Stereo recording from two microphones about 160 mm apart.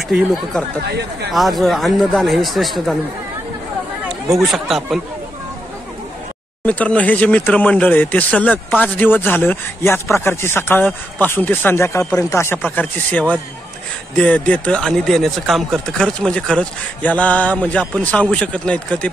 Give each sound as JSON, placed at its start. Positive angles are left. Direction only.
{"t": 0.8, "sound": "speech", "side_deg": -90}
{"t": 1.3, "sound": "speech", "side_deg": 0}
{"t": 4.5, "sound": "speech", "side_deg": 0}
{"t": 6.6, "sound": "speech", "side_deg": 10}